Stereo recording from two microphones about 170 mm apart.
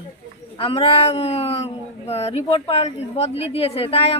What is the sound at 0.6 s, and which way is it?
Speech, 35° left (ahead or behind).